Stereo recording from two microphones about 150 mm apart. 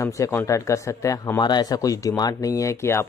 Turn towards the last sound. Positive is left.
turn(degrees=15)  # may be behind; listen again after turning